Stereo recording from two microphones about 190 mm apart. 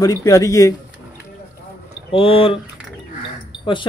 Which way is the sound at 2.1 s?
30° left (ahead or behind).